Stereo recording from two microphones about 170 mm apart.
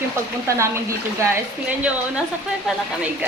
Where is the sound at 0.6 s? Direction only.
15° right (ahead or behind).